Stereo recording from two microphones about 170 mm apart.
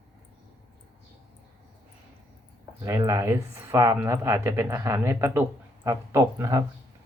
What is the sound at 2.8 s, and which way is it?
Speech, 20° right (ahead or behind).